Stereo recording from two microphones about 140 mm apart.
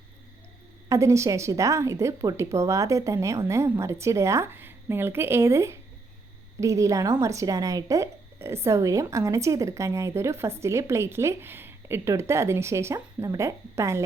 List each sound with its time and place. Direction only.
0.9 s speech: 20° right (ahead or behind)